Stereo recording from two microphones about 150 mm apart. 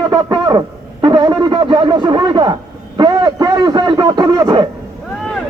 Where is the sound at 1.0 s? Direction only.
30° right (ahead or behind).